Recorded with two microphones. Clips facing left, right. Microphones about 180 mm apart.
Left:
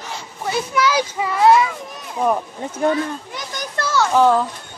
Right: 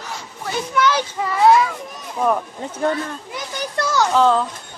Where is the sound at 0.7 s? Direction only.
5° left (ahead or behind).